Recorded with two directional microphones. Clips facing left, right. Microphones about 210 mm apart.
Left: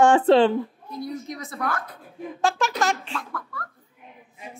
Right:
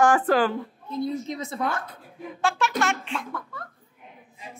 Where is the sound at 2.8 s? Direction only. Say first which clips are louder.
Left 1 dB; 40° left (ahead or behind).